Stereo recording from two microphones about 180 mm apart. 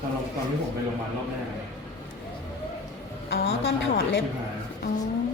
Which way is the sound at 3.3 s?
75° left (ahead or behind).